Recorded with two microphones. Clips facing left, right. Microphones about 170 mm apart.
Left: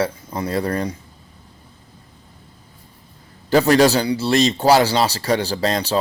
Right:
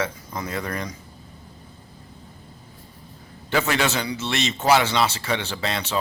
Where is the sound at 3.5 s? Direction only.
35° left (ahead or behind).